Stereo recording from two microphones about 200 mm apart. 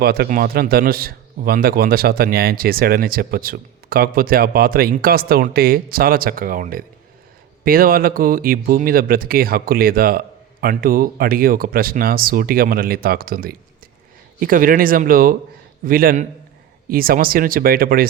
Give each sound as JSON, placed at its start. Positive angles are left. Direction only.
{"t": 0.0, "sound": "a man's voice", "side_deg": -50}